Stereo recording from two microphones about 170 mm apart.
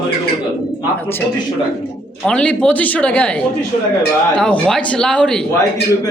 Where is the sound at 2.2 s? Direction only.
5° left (ahead or behind).